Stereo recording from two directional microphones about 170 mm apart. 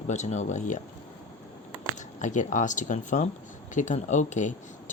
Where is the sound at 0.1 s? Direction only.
40° left (ahead or behind).